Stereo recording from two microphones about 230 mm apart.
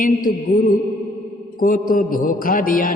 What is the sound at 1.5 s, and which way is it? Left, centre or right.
Music, left.